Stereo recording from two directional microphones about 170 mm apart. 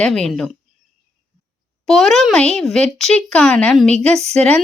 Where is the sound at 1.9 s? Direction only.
Centre (ahead or behind).